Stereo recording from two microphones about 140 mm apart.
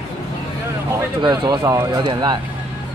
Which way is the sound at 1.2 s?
30° right (ahead or behind).